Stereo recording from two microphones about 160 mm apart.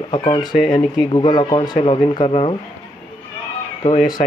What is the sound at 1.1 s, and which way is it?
A man's voice, 30° left (ahead or behind).